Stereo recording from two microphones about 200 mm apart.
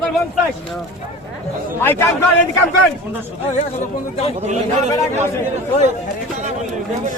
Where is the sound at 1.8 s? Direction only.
10° left (ahead or behind).